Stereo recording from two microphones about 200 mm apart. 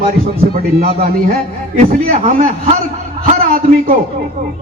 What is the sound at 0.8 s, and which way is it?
A man's voice, 45° right (ahead or behind).